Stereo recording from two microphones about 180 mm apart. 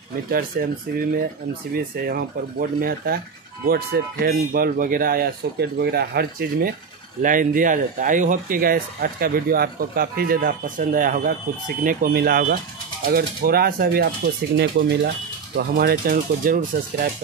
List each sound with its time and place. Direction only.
0.3 s speech: 55° right (ahead or behind)
7.2 s speech: 50° right (ahead or behind)